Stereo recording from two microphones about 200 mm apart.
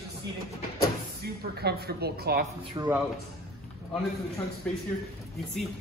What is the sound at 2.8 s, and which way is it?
Speech, 20° right (ahead or behind).